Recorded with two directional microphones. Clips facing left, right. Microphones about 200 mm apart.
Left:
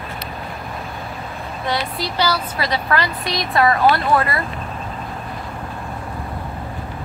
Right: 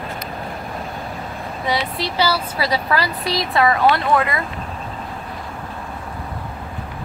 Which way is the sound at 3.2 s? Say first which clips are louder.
Right 2 dB; 30° right (ahead or behind).